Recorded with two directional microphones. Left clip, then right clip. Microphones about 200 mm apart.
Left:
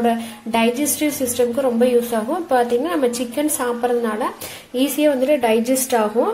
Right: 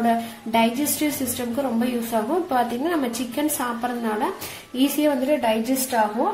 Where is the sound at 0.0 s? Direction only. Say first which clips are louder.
Left 2 dB; 35° left (ahead or behind).